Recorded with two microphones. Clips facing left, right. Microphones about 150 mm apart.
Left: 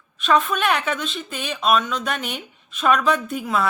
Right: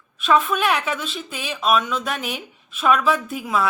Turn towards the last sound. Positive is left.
turn(degrees=-5)  # may be behind; listen again after turning